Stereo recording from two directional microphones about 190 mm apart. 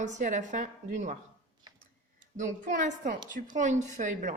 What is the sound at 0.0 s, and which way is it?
Speech, 40° right (ahead or behind).